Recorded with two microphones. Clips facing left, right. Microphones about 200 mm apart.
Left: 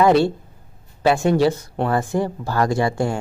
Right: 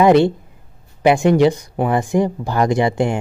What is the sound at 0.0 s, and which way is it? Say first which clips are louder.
Speech: right 3 dB; 20° right (ahead or behind).